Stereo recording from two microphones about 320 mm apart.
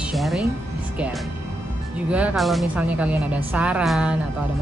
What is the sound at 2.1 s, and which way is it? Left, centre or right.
Speech, centre.